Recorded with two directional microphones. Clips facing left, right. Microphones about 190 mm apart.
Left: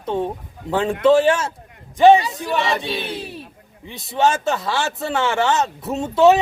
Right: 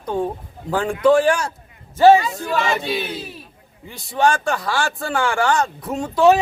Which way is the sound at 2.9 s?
Centre (ahead or behind).